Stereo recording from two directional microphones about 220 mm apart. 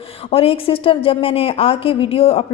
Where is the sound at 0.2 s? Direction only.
25° left (ahead or behind).